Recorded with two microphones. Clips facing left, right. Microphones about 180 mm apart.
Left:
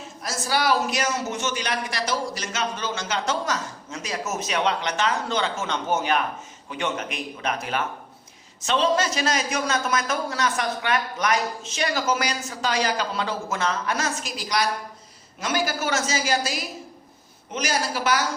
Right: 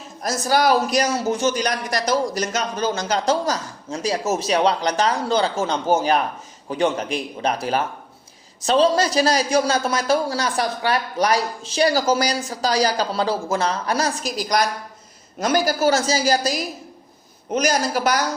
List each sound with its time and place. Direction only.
0.2 s speech: 40° right (ahead or behind)